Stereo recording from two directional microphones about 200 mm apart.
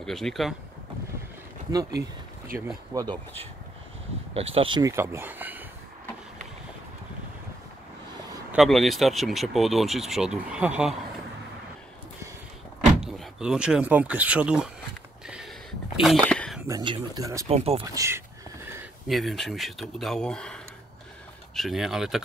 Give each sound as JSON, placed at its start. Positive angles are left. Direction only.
{"t": 0.0, "sound": "speech", "side_deg": 0}
{"t": 1.9, "sound": "a sound", "side_deg": -55}
{"t": 2.9, "sound": "speech", "side_deg": -15}
{"t": 4.6, "sound": "speech", "side_deg": -25}
{"t": 8.5, "sound": "speech", "side_deg": 0}
{"t": 13.0, "sound": "speech", "side_deg": -5}
{"t": 15.2, "sound": "a sound", "side_deg": -5}
{"t": 16.6, "sound": "speech", "side_deg": -20}
{"t": 17.5, "sound": "speech", "side_deg": -30}
{"t": 17.9, "sound": "speech", "side_deg": -15}
{"t": 19.0, "sound": "speech", "side_deg": 0}